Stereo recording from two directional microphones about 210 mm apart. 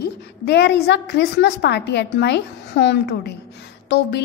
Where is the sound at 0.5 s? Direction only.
55° left (ahead or behind).